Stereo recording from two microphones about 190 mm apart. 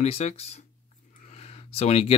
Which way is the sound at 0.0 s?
35° left (ahead or behind).